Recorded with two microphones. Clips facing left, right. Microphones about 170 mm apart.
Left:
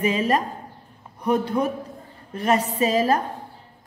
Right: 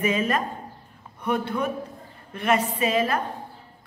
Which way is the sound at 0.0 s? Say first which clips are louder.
Left 2 dB; 35° left (ahead or behind).